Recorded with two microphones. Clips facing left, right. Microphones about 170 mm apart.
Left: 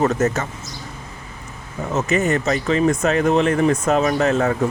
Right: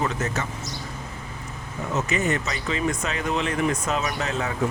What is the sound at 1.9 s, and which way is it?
Speech, 45° left (ahead or behind).